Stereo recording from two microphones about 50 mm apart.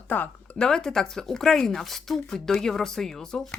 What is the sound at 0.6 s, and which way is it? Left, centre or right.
Speech, centre.